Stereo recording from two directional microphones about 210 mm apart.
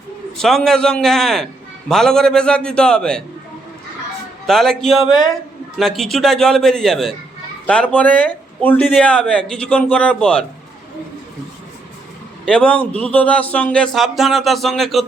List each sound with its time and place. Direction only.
0.3 s speech: centre (ahead or behind)
4.4 s speech: centre (ahead or behind)
12.5 s speech: 5° left (ahead or behind)